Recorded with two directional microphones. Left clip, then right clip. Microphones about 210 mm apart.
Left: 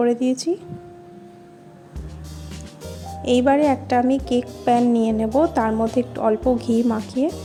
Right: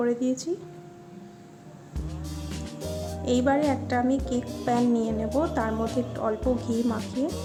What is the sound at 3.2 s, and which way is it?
A woman's voice, 25° left (ahead or behind).